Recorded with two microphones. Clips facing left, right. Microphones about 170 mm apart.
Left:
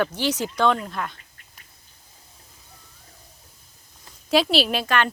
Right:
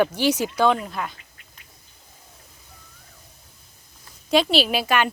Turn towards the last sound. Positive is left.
turn(degrees=-10)  # may be behind; listen again after turning